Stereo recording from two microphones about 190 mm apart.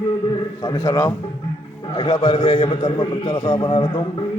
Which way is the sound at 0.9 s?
15° left (ahead or behind).